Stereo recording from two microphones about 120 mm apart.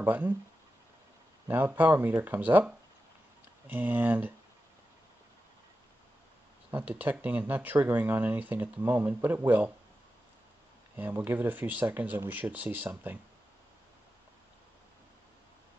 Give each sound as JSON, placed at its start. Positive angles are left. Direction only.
{"t": 0.0, "sound": "speech", "side_deg": -15}
{"t": 1.5, "sound": "speech", "side_deg": -15}
{"t": 6.7, "sound": "speech", "side_deg": -15}
{"t": 11.0, "sound": "speech", "side_deg": -15}